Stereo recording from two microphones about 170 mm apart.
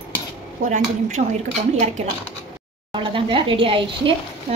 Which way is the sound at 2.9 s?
30° right (ahead or behind).